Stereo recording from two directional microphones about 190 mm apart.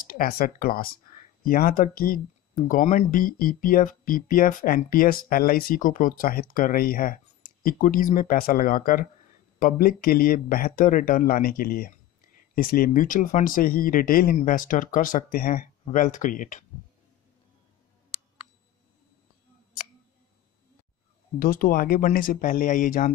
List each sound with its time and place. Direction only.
0.0 s speech: 50° left (ahead or behind)
21.4 s speech: 50° left (ahead or behind)